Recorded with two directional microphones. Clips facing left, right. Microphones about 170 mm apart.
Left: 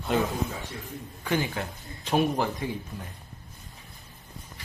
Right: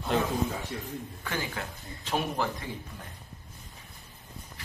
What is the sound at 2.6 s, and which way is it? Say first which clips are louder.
Speech: left 7 dB; 15° left (ahead or behind).